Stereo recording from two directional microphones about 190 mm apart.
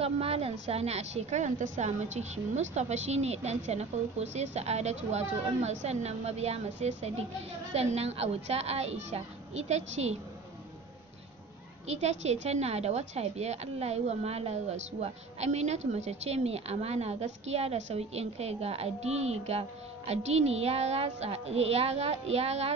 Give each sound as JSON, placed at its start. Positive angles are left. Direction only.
{"t": 0.0, "sound": "a woman's voice", "side_deg": -30}
{"t": 11.9, "sound": "a woman's voice", "side_deg": -35}